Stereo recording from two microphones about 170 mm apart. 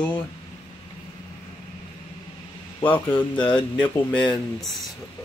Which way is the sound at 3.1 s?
30° left (ahead or behind).